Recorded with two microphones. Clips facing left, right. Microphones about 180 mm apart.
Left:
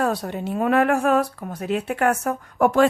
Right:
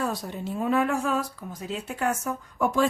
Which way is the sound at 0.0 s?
65° left (ahead or behind).